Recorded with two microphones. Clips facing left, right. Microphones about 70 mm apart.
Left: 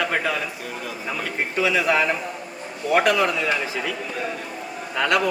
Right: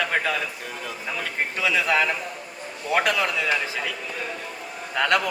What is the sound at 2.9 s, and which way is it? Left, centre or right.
Speech, centre.